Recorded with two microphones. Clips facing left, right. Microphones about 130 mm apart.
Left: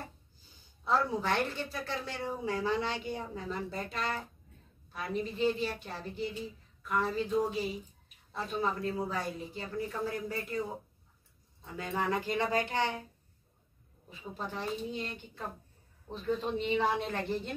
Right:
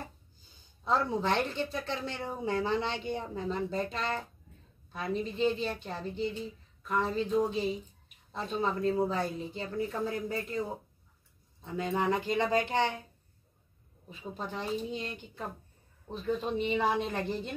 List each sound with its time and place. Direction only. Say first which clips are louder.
0.8 s speech: right 1 dB; 20° right (ahead or behind)
11.6 s speech: right 4 dB; 25° right (ahead or behind)
14.0 s speech: right 1 dB; 20° right (ahead or behind)